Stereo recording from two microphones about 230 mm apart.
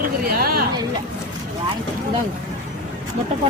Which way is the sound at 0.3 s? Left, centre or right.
Right.